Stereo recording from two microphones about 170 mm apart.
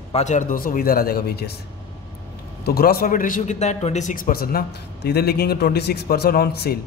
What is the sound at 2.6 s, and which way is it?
A man's voice, 65° left (ahead or behind).